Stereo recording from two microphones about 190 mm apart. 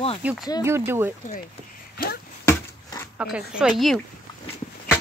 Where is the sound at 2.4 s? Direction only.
15° left (ahead or behind).